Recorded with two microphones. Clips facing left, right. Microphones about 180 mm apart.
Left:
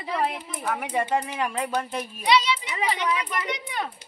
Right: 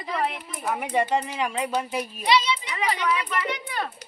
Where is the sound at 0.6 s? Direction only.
5° right (ahead or behind).